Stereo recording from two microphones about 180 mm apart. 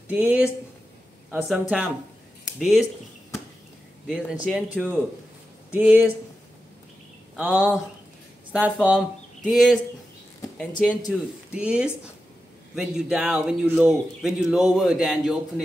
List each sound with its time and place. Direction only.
0.1 s speech: 10° right (ahead or behind)
1.5 s speech: 5° right (ahead or behind)
4.1 s speech: centre (ahead or behind)
7.3 s speech: 10° right (ahead or behind)